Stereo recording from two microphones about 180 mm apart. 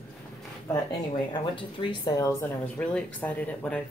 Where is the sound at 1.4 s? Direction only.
25° left (ahead or behind).